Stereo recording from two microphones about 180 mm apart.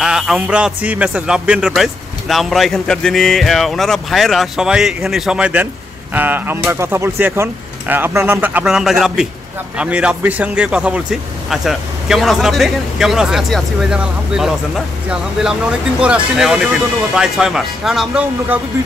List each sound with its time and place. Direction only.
0.0 s a man's voice: 5° right (ahead or behind)
16.0 s speech: 5° right (ahead or behind)